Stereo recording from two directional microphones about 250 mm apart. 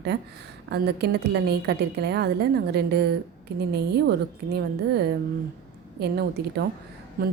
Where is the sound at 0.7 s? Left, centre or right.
Right.